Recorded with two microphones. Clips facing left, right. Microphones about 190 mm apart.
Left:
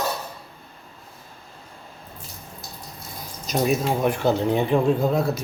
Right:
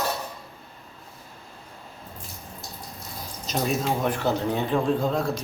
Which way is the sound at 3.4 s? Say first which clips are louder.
Left 4 dB; 10° left (ahead or behind).